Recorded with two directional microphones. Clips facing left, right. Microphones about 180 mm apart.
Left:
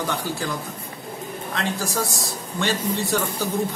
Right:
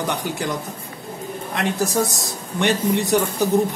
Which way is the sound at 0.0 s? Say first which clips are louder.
Right 2 dB; 20° right (ahead or behind).